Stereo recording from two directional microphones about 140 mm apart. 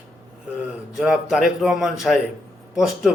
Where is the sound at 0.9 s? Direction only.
Centre (ahead or behind).